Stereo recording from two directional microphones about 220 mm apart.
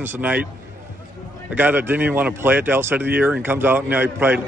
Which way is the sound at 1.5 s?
10° right (ahead or behind).